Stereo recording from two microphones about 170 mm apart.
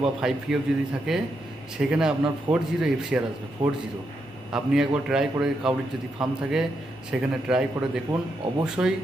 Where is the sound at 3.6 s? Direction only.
25° right (ahead or behind).